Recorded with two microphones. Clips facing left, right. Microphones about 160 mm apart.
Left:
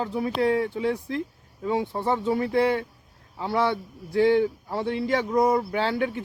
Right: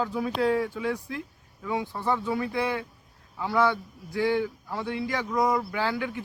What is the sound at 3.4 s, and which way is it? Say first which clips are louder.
A man's voice: even; 25° left (ahead or behind).